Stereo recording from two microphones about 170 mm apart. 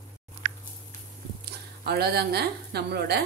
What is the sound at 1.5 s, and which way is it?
A woman's voice, 70° right (ahead or behind).